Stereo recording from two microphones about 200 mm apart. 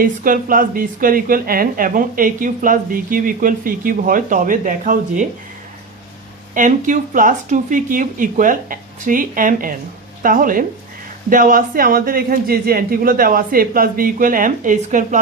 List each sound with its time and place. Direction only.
0.0 s a woman's voice: 45° right (ahead or behind)
6.5 s a woman's voice: 40° right (ahead or behind)